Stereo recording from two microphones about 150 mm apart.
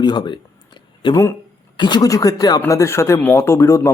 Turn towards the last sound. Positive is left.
turn(degrees=20)  # may be behind; listen again after turning